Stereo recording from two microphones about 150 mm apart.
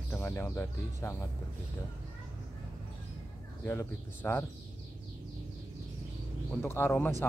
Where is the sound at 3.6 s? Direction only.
15° left (ahead or behind).